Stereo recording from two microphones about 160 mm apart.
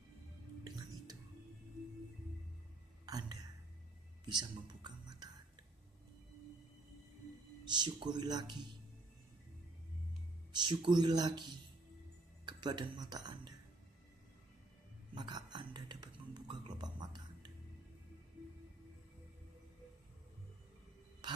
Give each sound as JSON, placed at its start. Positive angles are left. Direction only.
{"t": 0.7, "sound": "music", "side_deg": -25}
{"t": 3.1, "sound": "whispering", "side_deg": -25}
{"t": 7.6, "sound": "speech", "side_deg": -30}
{"t": 10.5, "sound": "speech", "side_deg": -30}
{"t": 15.1, "sound": "a sound", "side_deg": -25}